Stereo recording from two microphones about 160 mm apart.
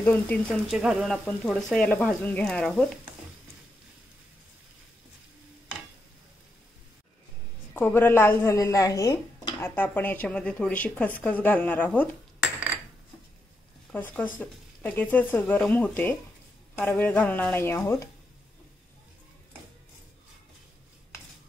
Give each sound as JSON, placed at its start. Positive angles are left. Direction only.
{"t": 0.0, "sound": "a woman's voice", "side_deg": 10}
{"t": 0.7, "sound": "speech", "side_deg": -5}
{"t": 7.7, "sound": "a woman's voice", "side_deg": 10}
{"t": 9.8, "sound": "a woman's voice", "side_deg": 10}
{"t": 13.9, "sound": "a woman's voice", "side_deg": 10}